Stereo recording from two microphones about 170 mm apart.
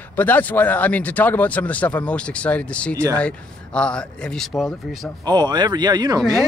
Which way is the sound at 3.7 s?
5° left (ahead or behind).